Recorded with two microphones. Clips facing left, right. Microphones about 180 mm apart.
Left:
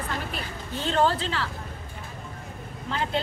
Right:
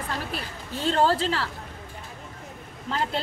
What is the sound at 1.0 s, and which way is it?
Speech, 35° right (ahead or behind).